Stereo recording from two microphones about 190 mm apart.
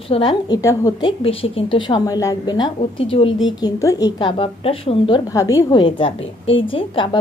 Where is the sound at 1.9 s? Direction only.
20° left (ahead or behind).